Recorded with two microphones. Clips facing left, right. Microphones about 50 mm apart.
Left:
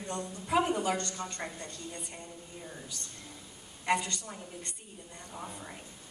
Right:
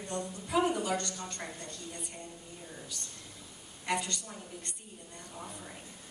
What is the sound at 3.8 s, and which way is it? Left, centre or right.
A woman's voice, left.